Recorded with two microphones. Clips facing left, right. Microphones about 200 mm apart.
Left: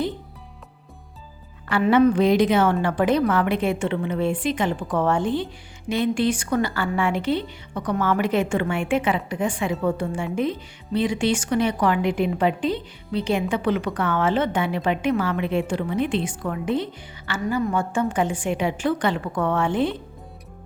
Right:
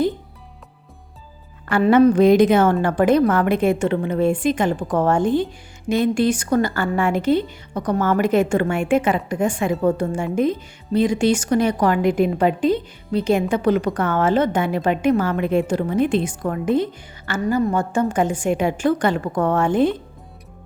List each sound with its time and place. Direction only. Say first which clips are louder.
1.7 s a woman's voice: right 4 dB; 40° right (ahead or behind)